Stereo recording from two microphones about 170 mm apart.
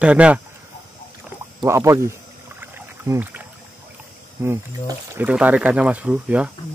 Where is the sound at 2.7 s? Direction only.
15° right (ahead or behind).